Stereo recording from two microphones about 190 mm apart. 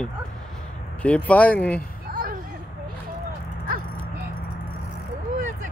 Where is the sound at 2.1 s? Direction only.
50° right (ahead or behind).